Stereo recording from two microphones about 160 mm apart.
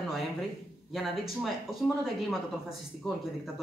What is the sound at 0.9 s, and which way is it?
Speech, centre (ahead or behind).